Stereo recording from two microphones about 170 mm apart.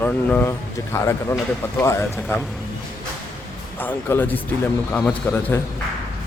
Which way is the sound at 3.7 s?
10° left (ahead or behind).